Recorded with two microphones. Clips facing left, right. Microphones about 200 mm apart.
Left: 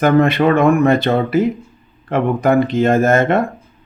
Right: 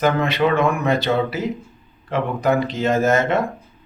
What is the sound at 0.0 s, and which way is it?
Speech, 55° left (ahead or behind).